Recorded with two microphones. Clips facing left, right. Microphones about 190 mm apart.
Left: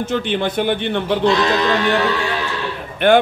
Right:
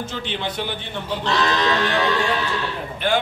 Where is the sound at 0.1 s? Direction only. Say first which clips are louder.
Left 9 dB; 55° left (ahead or behind).